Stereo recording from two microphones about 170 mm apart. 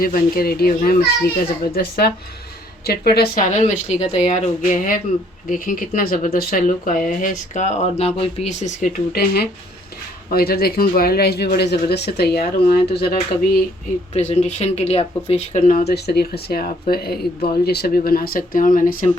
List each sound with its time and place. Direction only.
0.0 s speech: 60° left (ahead or behind)
3.4 s speech: 45° left (ahead or behind); by 13.7 s 65° left (ahead or behind)
14.1 s speech: 40° left (ahead or behind)
15.8 s speech: 70° left (ahead or behind); by 19.1 s 55° left (ahead or behind)